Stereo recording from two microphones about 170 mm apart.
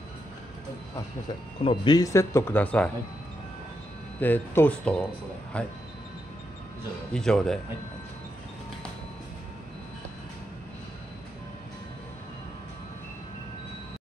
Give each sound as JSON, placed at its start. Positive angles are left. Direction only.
{"t": 1.6, "sound": "speech", "side_deg": 25}
{"t": 4.2, "sound": "speech", "side_deg": 10}
{"t": 7.1, "sound": "speech", "side_deg": 5}